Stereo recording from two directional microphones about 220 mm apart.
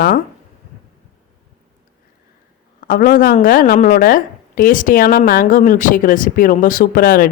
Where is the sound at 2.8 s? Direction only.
40° left (ahead or behind).